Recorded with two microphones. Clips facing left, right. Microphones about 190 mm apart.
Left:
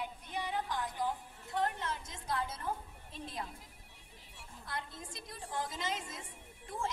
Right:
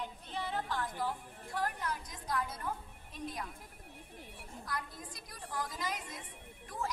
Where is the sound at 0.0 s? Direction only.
15° left (ahead or behind).